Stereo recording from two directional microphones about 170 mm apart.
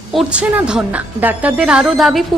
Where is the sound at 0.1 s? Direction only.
5° right (ahead or behind).